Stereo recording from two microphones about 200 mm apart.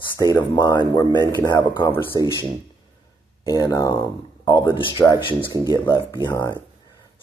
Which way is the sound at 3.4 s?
15° left (ahead or behind).